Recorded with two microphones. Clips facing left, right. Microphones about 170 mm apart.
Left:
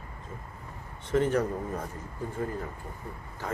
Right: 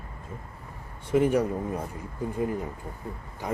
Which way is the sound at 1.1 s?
10° right (ahead or behind).